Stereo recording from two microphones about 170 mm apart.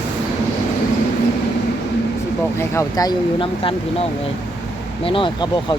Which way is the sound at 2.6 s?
20° left (ahead or behind).